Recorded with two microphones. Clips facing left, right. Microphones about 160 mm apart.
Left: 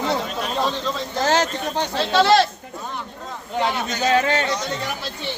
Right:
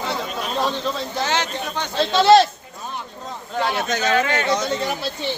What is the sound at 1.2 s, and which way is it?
Speech, 40° left (ahead or behind).